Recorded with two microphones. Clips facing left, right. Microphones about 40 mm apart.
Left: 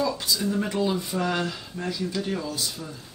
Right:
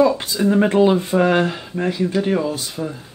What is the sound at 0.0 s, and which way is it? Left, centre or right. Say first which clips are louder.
Speech: right 10 dB; right.